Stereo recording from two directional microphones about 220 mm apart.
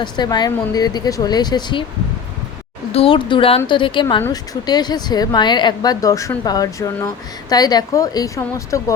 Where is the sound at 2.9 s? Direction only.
25° left (ahead or behind).